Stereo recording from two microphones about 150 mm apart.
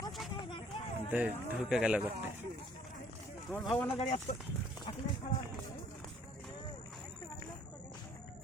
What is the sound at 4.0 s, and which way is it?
Speech, 50° left (ahead or behind).